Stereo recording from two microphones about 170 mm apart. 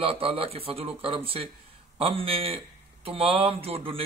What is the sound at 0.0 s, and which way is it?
A man's voice, 35° right (ahead or behind).